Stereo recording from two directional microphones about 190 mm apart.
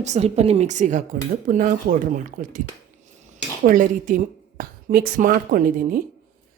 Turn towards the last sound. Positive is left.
turn(degrees=-45)  # may be behind; listen again after turning